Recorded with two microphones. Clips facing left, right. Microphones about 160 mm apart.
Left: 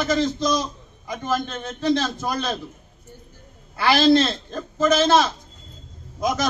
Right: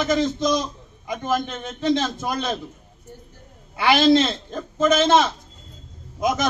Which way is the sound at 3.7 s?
15° right (ahead or behind).